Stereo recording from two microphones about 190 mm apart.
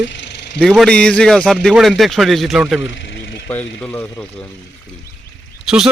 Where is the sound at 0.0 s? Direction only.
70° left (ahead or behind).